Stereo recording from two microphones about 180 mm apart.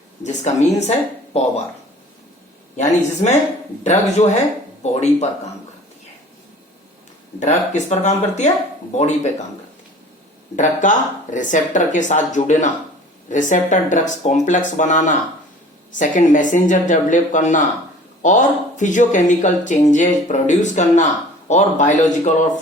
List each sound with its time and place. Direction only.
0.3 s speech: 40° left (ahead or behind)
2.7 s speech: 40° left (ahead or behind)
7.3 s speech: 40° left (ahead or behind)
10.5 s speech: 45° left (ahead or behind)